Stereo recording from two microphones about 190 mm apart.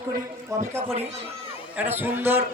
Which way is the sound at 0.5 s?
15° right (ahead or behind).